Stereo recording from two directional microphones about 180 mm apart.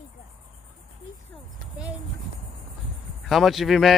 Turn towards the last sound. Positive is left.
turn(degrees=0)  # may be behind; listen again after turning